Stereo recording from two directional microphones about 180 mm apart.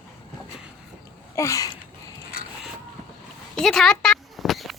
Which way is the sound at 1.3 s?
15° left (ahead or behind).